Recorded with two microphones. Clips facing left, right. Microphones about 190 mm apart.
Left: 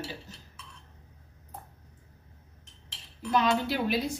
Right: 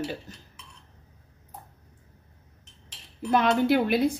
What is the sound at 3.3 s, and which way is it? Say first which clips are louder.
Speech: right 5 dB; 55° right (ahead or behind).